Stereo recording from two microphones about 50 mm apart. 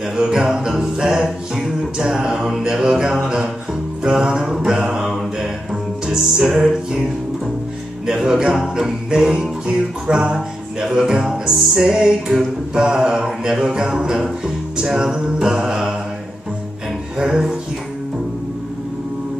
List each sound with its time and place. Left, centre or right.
0.1 s music: centre
4.0 s mantra: centre
6.0 s music: centre
8.1 s music: centre
17.2 s music: centre